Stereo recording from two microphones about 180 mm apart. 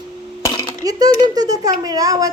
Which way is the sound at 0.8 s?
20° right (ahead or behind).